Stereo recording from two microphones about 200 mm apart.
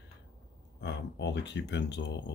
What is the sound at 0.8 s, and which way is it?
Speech, 60° left (ahead or behind).